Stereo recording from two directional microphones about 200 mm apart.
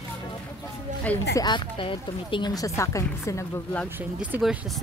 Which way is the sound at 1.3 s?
20° left (ahead or behind).